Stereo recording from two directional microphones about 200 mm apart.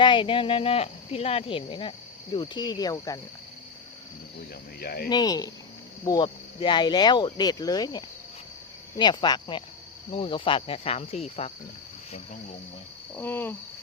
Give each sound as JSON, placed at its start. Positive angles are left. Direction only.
{"t": 0.0, "sound": "speech", "side_deg": 25}
{"t": 4.8, "sound": "speech", "side_deg": 50}
{"t": 5.0, "sound": "speech", "side_deg": 20}
{"t": 13.1, "sound": "cricket", "side_deg": 10}